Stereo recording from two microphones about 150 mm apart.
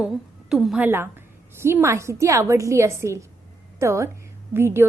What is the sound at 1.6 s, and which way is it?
A woman's voice, 15° right (ahead or behind).